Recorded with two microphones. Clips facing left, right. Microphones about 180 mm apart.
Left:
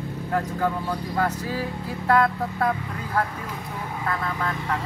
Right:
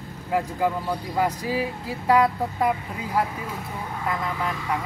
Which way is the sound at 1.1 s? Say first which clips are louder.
Right 2 dB; 10° right (ahead or behind).